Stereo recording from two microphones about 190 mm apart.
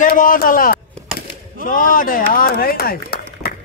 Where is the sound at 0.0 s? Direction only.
45° left (ahead or behind).